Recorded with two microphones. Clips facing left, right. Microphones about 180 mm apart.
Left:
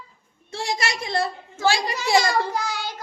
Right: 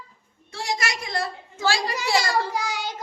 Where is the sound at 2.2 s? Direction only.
15° right (ahead or behind).